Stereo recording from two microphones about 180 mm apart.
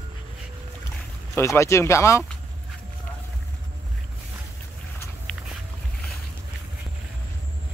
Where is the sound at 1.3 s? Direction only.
15° left (ahead or behind).